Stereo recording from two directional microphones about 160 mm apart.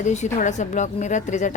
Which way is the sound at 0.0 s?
45° left (ahead or behind).